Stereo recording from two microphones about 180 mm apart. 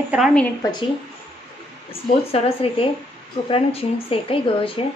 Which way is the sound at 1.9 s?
30° left (ahead or behind).